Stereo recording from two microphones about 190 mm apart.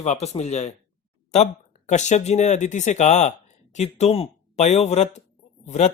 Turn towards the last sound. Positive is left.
turn(degrees=35)  # may be behind; listen again after turning